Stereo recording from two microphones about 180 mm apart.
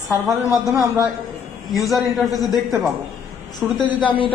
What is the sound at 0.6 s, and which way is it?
Speech, 20° right (ahead or behind).